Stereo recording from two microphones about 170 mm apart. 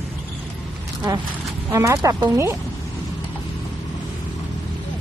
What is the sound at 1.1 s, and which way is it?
Speech, 20° right (ahead or behind).